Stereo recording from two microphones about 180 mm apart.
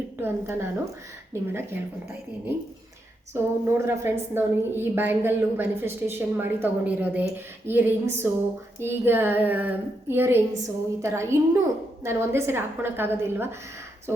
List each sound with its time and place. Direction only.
0.2 s a woman's voice: 15° right (ahead or behind)
3.3 s a woman's voice: 15° right (ahead or behind)